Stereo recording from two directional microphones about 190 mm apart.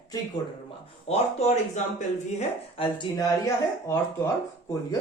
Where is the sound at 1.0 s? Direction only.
35° left (ahead or behind).